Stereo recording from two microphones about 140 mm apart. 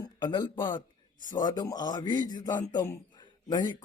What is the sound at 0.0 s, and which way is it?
A man's voice, 30° left (ahead or behind).